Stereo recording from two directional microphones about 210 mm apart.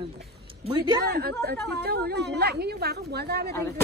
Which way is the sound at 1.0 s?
50° right (ahead or behind).